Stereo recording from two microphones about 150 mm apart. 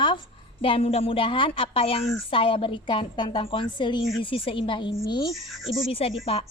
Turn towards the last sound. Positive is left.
turn(degrees=40)  # may be behind; listen again after turning